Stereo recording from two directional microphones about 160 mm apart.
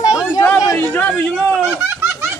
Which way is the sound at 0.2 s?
20° left (ahead or behind).